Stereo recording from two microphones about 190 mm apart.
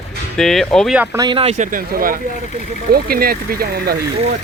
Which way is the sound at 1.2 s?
30° right (ahead or behind).